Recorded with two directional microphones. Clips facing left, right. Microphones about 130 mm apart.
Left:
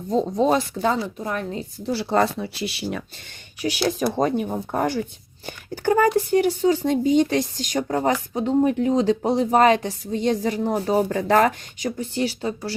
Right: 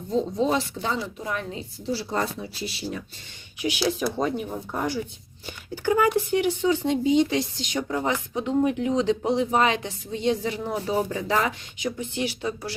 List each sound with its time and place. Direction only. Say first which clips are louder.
0.1 s speech: left 4 dB; 45° left (ahead or behind)
1.9 s speech: left 6 dB; 65° left (ahead or behind)
3.6 s speech: left 2 dB; 45° left (ahead or behind)